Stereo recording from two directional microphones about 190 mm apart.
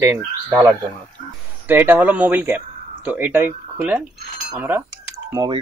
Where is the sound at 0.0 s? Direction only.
10° right (ahead or behind).